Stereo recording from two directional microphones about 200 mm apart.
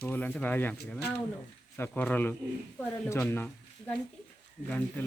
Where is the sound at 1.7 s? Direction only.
10° left (ahead or behind).